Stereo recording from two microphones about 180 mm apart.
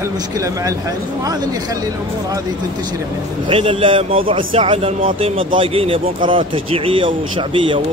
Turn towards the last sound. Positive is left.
turn(degrees=-30)  # may be behind; listen again after turning